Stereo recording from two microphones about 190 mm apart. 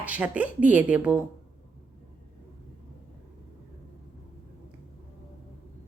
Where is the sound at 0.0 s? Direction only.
10° right (ahead or behind).